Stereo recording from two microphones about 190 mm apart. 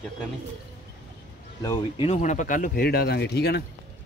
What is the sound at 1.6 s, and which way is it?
Speech, 20° left (ahead or behind).